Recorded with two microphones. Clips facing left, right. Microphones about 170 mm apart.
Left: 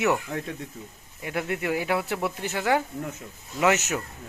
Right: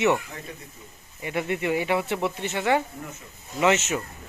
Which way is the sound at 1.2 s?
Centre (ahead or behind).